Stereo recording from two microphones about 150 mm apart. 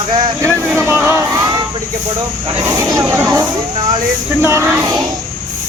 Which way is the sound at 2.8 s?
20° right (ahead or behind).